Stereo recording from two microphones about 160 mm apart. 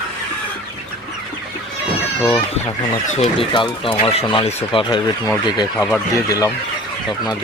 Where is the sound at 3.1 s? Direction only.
35° left (ahead or behind); by 6.4 s 20° left (ahead or behind).